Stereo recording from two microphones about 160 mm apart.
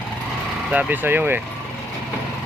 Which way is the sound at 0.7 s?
10° right (ahead or behind).